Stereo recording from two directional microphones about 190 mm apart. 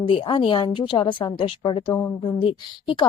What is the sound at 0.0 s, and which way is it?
A woman's voice, 25° left (ahead or behind).